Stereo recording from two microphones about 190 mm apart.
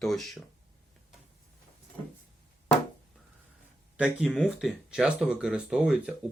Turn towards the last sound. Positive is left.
turn(degrees=-5)  # may be behind; listen again after turning